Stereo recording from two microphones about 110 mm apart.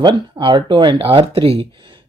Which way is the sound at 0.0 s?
45° right (ahead or behind).